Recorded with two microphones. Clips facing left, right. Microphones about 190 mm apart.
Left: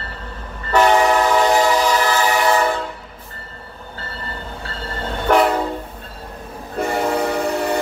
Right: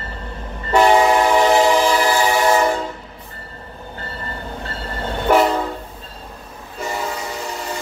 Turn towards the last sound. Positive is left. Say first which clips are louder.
# left 8 dB
turn(degrees=60)  # may be behind; listen again after turning